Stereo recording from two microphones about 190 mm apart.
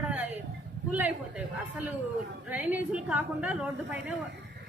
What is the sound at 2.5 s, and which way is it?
A woman's voice, 10° right (ahead or behind).